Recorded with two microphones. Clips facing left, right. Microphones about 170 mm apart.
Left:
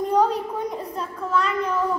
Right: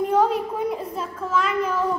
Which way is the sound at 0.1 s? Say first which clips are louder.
Left 2 dB; 5° right (ahead or behind).